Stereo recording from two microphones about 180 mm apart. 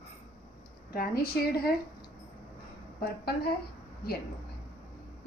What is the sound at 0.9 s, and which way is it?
Speech, 55° left (ahead or behind).